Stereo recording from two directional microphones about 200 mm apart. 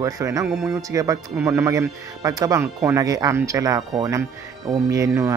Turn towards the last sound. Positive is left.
turn(degrees=-15)  # may be behind; listen again after turning